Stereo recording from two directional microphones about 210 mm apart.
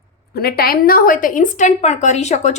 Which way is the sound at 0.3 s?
45° left (ahead or behind).